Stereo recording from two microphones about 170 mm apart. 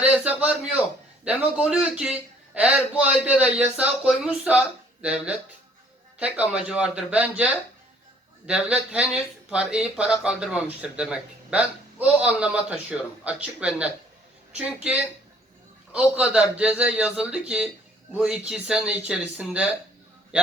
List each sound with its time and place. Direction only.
0.0 s a man's voice: 10° right (ahead or behind)
15.9 s a man's voice: 5° right (ahead or behind)